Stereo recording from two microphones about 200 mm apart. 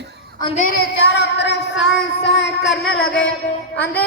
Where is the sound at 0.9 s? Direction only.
60° left (ahead or behind).